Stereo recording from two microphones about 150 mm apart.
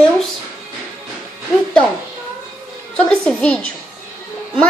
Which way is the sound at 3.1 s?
5° left (ahead or behind).